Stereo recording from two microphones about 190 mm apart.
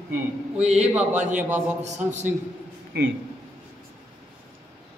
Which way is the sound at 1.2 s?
40° right (ahead or behind).